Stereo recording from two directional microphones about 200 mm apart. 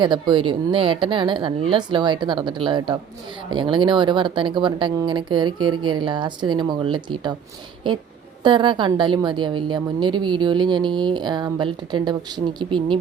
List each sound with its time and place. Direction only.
0.0 s a woman's voice: 25° right (ahead or behind)
8.4 s a woman's voice: 25° right (ahead or behind)